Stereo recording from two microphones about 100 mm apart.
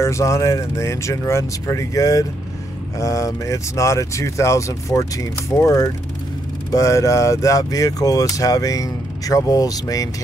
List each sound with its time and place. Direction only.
0.0 s speech: 30° left (ahead or behind)